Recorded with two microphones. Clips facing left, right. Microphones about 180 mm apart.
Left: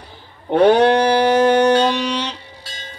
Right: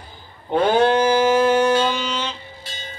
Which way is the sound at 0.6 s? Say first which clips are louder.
Left 4 dB; 70° left (ahead or behind).